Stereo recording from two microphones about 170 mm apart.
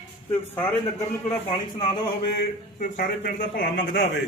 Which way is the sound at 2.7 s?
50° left (ahead or behind).